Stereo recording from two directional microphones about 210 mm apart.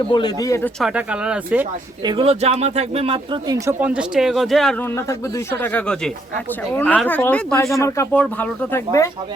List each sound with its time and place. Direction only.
0.1 s speech: 20° left (ahead or behind)
0.8 s speech: 5° right (ahead or behind)
2.0 s speech: 25° right (ahead or behind)
3.5 s speech: 10° right (ahead or behind)
4.9 s speech: 10° left (ahead or behind)